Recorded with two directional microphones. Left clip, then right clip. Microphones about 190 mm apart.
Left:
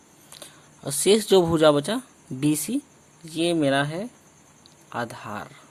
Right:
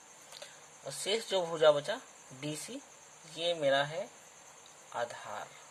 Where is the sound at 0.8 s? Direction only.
35° left (ahead or behind).